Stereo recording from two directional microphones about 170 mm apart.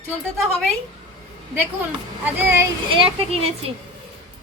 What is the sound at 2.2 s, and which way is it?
Speech, 15° right (ahead or behind).